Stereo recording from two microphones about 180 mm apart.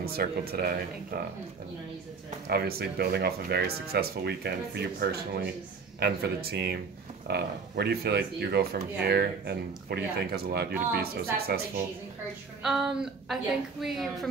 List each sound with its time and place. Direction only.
0.0 s speech: 55° right (ahead or behind)
2.5 s speech: 60° right (ahead or behind)
12.6 s a woman's voice: centre (ahead or behind)